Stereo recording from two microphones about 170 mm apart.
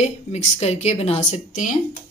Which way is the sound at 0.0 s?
40° left (ahead or behind).